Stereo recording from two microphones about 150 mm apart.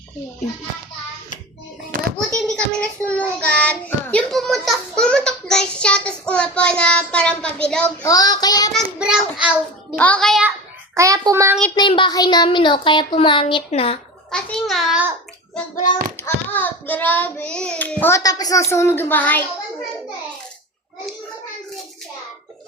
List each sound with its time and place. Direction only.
2.3 s child singing: 5° left (ahead or behind)
8.0 s child singing: 25° left (ahead or behind)
9.0 s a child's voice: 10° right (ahead or behind)
10.0 s a child's voice: 5° left (ahead or behind)
10.9 s a child's voice: 20° right (ahead or behind)
11.7 s speech: 35° left (ahead or behind)
14.3 s a child's voice: 5° left (ahead or behind)
15.7 s a child's voice: 60° left (ahead or behind)
16.1 s child singing: 15° left (ahead or behind)
18.2 s child singing: 25° left (ahead or behind)